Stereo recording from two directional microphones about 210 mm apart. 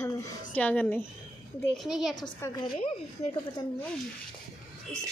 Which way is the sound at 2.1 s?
20° left (ahead or behind).